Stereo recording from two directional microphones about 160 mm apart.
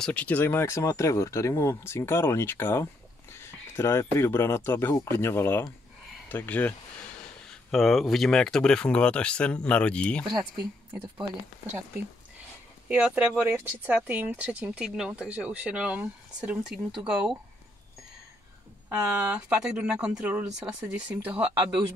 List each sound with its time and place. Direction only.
0.0 s speech: 10° left (ahead or behind)
12.8 s speech: 10° right (ahead or behind)
18.9 s speech: 10° right (ahead or behind)